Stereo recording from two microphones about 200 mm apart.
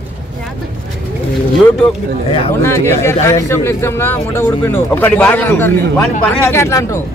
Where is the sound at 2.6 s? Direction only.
15° left (ahead or behind).